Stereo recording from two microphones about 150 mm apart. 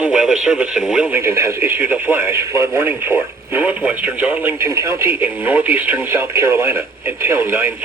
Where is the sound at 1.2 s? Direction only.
15° right (ahead or behind).